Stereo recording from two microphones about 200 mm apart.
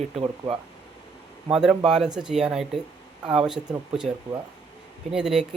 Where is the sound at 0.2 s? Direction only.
25° right (ahead or behind).